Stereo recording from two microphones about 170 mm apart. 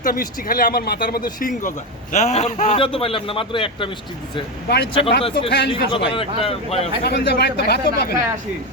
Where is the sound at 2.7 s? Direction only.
30° left (ahead or behind).